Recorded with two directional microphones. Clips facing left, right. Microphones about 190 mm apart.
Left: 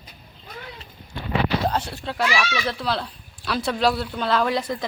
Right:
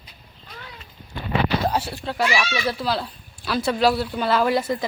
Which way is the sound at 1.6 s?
5° right (ahead or behind).